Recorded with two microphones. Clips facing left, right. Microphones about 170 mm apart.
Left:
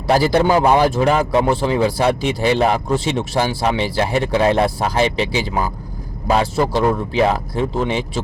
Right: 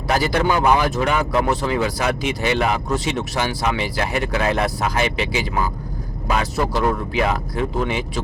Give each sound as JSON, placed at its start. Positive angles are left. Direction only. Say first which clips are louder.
{"t": 0.1, "sound": "speech", "louder": "left 5 dB", "side_deg": 30}